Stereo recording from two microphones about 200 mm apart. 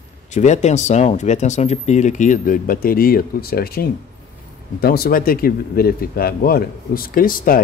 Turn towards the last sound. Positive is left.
turn(degrees=45)  # may be behind; listen again after turning